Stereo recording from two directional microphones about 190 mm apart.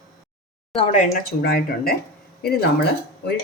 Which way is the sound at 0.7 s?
35° left (ahead or behind).